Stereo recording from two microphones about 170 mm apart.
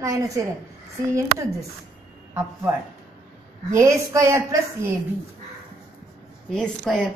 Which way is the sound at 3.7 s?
15° right (ahead or behind).